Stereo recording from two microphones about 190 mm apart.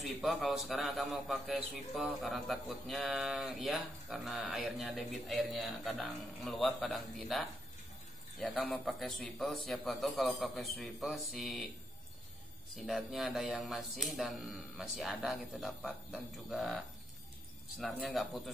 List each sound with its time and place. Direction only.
0.0 s a man's voice: centre (ahead or behind)
12.7 s a man's voice: centre (ahead or behind)